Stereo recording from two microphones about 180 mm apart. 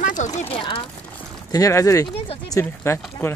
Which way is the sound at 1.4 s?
20° left (ahead or behind).